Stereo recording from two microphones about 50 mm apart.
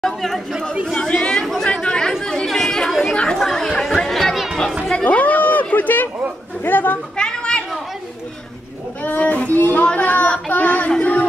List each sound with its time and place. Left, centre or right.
0.0 s speech: centre
0.9 s chatter: centre
5.0 s a sound: left
6.6 s chatter: left
7.2 s children playing: centre
9.0 s child singing: left
9.9 s a sound: left